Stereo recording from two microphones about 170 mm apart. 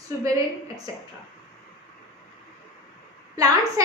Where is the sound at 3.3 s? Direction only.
20° right (ahead or behind).